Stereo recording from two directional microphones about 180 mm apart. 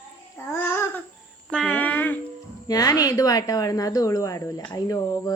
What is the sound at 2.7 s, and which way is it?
Speech, 20° left (ahead or behind).